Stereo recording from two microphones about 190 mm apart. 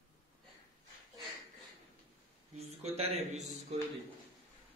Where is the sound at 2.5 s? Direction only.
35° right (ahead or behind).